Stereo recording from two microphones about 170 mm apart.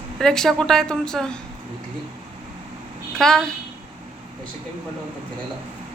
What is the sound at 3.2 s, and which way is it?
Speech, 5° left (ahead or behind).